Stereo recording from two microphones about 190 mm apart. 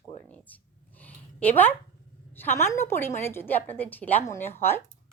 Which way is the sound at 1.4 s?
10° left (ahead or behind).